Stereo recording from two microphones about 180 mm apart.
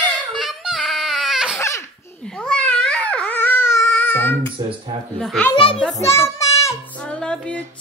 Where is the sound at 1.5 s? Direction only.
15° left (ahead or behind).